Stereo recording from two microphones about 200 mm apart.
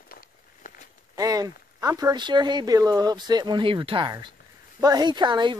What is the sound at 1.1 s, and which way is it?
Speech, 20° right (ahead or behind).